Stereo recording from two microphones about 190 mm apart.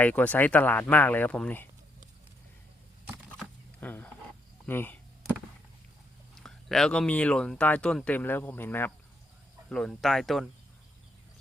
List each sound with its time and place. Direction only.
0.0 s speech: 10° left (ahead or behind)
3.8 s speech: 10° left (ahead or behind)
6.3 s speech: centre (ahead or behind)